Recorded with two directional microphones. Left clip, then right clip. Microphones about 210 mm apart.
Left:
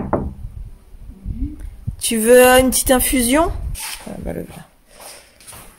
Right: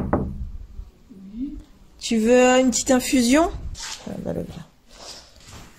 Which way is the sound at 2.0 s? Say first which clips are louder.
Left 6 dB; 10° left (ahead or behind).